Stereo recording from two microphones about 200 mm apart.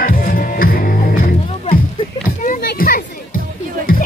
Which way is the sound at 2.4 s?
45° left (ahead or behind).